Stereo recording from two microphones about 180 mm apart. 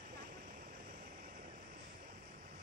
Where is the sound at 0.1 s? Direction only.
55° right (ahead or behind).